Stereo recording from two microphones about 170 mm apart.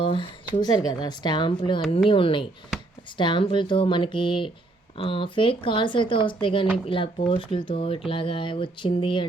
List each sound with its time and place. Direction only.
0.0 s speech: 30° left (ahead or behind)